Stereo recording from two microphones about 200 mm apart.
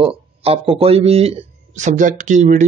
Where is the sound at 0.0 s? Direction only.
30° right (ahead or behind).